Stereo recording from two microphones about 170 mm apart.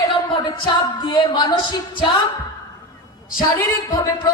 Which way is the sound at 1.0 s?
25° left (ahead or behind).